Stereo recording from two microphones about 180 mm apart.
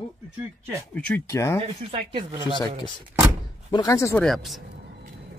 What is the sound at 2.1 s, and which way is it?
Speech, 30° right (ahead or behind).